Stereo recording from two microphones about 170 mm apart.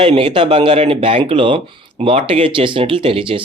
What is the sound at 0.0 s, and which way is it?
Speech, 30° right (ahead or behind).